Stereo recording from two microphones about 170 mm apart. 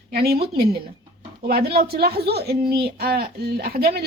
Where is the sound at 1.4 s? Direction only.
65° right (ahead or behind).